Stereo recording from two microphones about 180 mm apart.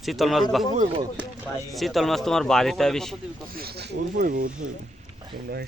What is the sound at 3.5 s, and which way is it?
Speech, 55° right (ahead or behind).